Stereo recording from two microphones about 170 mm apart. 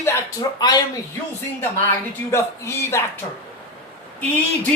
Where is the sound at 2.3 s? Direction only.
15° left (ahead or behind).